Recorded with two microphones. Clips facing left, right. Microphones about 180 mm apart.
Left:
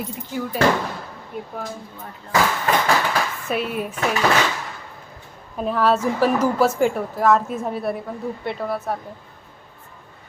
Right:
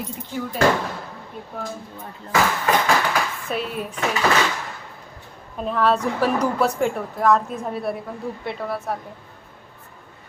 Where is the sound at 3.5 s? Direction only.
5° left (ahead or behind).